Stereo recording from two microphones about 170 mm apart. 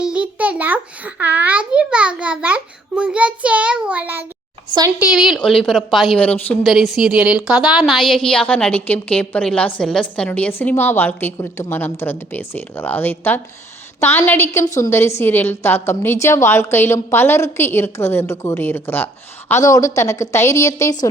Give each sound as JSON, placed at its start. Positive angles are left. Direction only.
{"t": 0.0, "sound": "a child's voice", "side_deg": -5}